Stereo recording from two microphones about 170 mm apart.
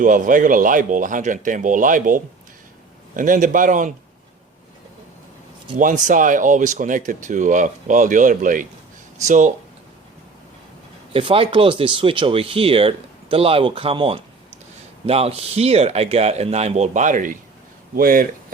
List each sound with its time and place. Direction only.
0.0 s speech: 50° right (ahead or behind)
5.7 s speech: 50° right (ahead or behind)
11.1 s speech: 30° right (ahead or behind); by 18.3 s 60° right (ahead or behind)